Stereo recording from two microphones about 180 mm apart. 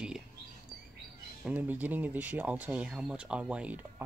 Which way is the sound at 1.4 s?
10° right (ahead or behind).